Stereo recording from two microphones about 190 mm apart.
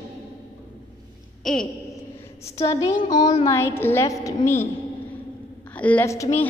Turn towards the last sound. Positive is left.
turn(degrees=15)  # may be behind; listen again after turning